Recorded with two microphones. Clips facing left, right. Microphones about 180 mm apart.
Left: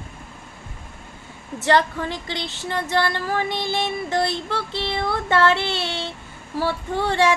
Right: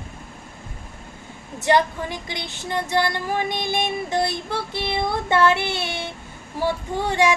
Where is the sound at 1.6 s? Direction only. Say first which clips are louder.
Even; 15° right (ahead or behind).